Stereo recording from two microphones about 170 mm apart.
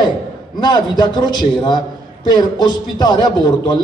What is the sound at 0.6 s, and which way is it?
A man's voice, 25° left (ahead or behind).